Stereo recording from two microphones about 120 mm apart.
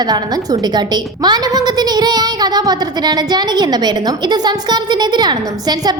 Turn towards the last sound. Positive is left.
turn(degrees=-35)  # may be behind; listen again after turning